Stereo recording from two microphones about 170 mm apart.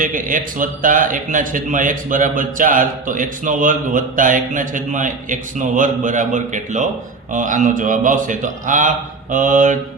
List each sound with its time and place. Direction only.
0.0 s a man's voice: 50° right (ahead or behind)